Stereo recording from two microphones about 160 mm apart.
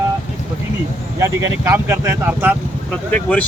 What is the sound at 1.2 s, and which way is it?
Speech, 15° right (ahead or behind).